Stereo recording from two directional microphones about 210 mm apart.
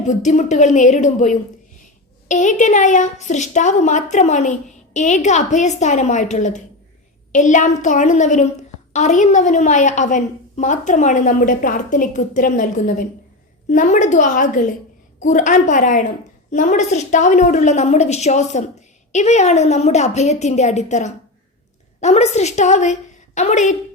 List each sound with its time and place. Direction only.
0.0 s a woman's voice: 35° left (ahead or behind)